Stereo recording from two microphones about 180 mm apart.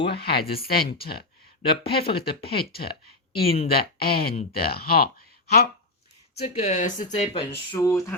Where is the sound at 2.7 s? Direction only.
60° left (ahead or behind).